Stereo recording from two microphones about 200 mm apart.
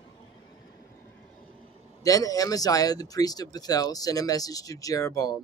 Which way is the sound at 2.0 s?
15° left (ahead or behind).